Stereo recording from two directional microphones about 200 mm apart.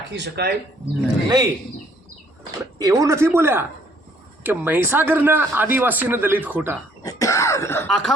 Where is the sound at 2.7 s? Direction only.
15° right (ahead or behind).